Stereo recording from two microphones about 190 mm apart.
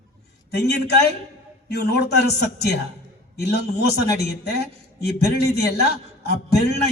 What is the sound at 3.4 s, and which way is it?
A man's voice, 60° left (ahead or behind).